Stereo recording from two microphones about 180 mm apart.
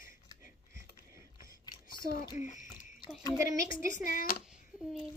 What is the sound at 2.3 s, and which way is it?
Speech, 45° left (ahead or behind).